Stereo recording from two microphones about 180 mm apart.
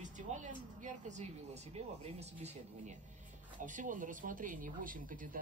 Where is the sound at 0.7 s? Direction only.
45° right (ahead or behind).